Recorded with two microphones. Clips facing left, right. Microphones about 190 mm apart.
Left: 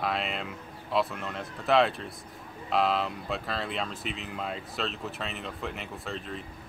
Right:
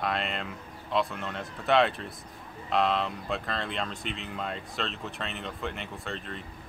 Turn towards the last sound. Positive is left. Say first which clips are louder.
# left 1 dB
turn(degrees=0)  # may be behind; listen again after turning